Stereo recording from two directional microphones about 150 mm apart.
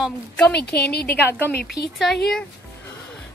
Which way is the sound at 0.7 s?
90° left.